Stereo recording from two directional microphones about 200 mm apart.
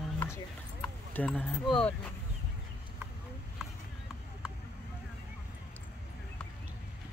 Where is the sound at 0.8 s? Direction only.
10° left (ahead or behind).